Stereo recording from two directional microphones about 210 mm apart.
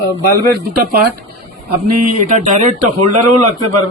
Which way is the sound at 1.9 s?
45° right (ahead or behind).